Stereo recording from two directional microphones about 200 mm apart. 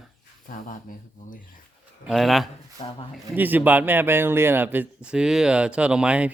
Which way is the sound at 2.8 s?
35° left (ahead or behind).